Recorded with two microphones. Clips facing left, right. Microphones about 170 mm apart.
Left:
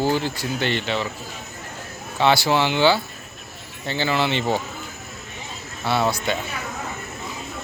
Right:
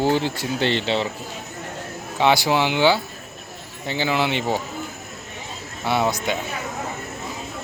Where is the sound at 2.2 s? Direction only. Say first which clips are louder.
Even; 15° right (ahead or behind).